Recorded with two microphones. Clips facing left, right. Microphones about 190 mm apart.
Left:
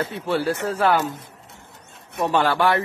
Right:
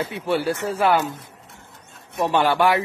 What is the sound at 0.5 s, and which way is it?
Speech, 20° right (ahead or behind).